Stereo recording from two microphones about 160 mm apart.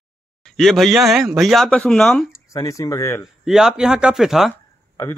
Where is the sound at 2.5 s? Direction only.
20° left (ahead or behind).